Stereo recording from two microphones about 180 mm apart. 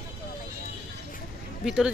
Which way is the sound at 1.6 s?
5° right (ahead or behind).